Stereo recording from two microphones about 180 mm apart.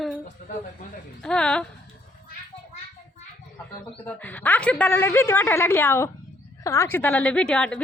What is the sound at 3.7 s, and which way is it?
A woman's voice, 10° left (ahead or behind).